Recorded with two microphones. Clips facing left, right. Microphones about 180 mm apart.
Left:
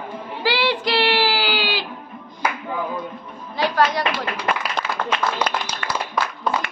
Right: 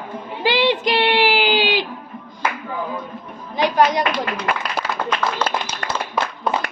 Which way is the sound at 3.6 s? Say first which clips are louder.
Right 3 dB; 20° right (ahead or behind).